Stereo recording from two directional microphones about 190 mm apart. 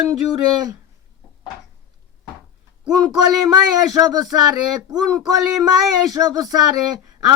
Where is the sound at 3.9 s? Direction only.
20° right (ahead or behind).